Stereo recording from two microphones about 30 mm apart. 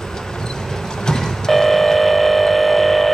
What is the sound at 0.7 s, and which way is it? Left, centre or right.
Vehicle, centre.